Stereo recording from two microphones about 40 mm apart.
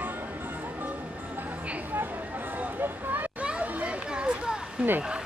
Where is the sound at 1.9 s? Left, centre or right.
Right.